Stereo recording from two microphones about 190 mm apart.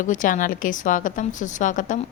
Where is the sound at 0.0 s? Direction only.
40° left (ahead or behind).